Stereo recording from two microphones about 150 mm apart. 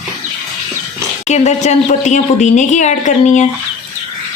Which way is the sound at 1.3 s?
50° left (ahead or behind).